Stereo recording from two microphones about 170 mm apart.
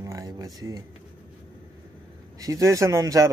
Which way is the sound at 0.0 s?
20° right (ahead or behind).